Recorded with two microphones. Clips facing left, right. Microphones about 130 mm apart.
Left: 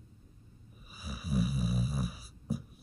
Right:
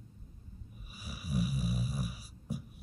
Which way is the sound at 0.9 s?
35° left (ahead or behind).